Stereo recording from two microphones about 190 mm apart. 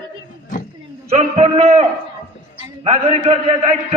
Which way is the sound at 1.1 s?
35° right (ahead or behind).